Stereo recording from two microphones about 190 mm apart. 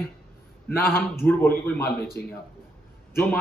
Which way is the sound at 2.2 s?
55° left (ahead or behind).